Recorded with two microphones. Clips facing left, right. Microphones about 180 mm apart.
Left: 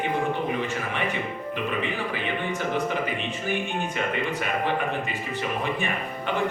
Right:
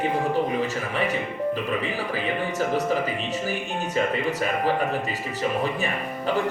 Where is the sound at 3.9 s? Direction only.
35° right (ahead or behind).